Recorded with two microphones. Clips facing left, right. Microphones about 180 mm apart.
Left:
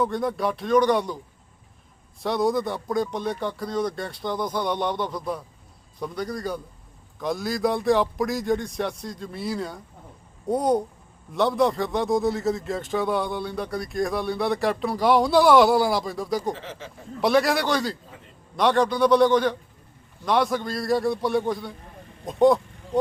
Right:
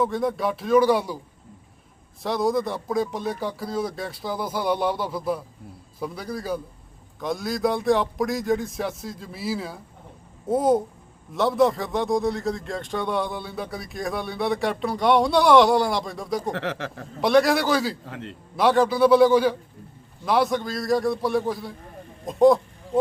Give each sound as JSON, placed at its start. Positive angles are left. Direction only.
{"t": 0.0, "sound": "a man's voice", "side_deg": 0}
{"t": 2.2, "sound": "a man's voice", "side_deg": 0}
{"t": 16.5, "sound": "speech", "side_deg": -70}
{"t": 17.2, "sound": "a man's voice", "side_deg": 0}
{"t": 18.0, "sound": "a man's voice", "side_deg": -85}
{"t": 18.5, "sound": "a man's voice", "side_deg": -5}